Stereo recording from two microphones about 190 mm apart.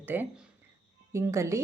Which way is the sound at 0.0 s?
10° right (ahead or behind).